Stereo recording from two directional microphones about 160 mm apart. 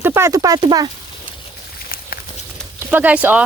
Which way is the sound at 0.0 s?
20° right (ahead or behind).